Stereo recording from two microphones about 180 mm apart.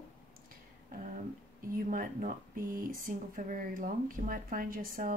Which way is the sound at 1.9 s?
45° right (ahead or behind).